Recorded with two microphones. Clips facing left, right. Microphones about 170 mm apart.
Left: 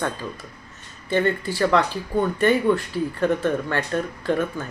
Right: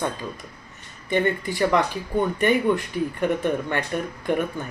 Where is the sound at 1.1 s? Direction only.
15° right (ahead or behind).